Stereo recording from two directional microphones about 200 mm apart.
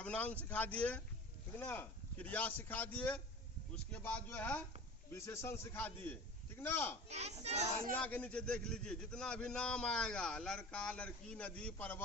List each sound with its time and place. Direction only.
0.0 s a man's voice: 5° left (ahead or behind)
7.1 s speech: 35° right (ahead or behind)
7.9 s a man's voice: 10° left (ahead or behind)